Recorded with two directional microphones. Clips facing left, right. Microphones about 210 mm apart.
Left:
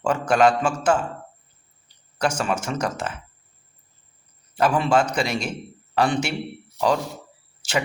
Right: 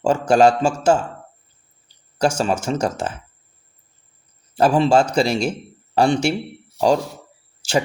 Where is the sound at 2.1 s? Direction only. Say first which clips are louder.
Right 4 dB; 30° right (ahead or behind).